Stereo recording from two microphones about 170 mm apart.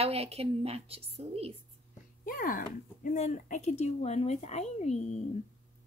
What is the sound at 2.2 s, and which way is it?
A woman's voice, 55° left (ahead or behind).